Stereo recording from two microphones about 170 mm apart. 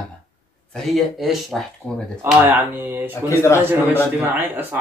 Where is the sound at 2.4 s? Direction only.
10° right (ahead or behind).